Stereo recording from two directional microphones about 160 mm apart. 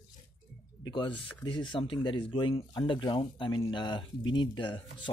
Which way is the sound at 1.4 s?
30° left (ahead or behind).